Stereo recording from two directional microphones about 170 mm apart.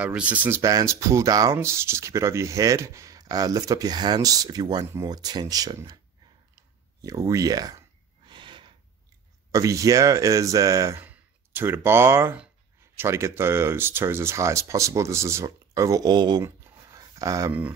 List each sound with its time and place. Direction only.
0.0 s speech: 10° right (ahead or behind)
6.5 s clicking: 20° right (ahead or behind)
8.3 s gasp: 30° right (ahead or behind)
9.5 s speech: 20° right (ahead or behind)